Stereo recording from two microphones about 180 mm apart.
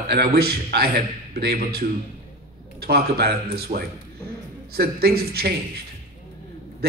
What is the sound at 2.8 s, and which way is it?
Speech, 60° right (ahead or behind).